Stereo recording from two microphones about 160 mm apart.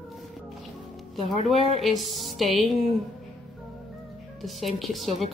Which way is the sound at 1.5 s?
40° left (ahead or behind).